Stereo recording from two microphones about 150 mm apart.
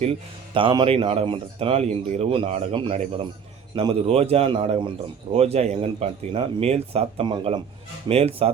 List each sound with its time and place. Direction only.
0.0 s speech: 40° right (ahead or behind)
4.1 s speech: 45° right (ahead or behind)
8.0 s speech: 40° right (ahead or behind)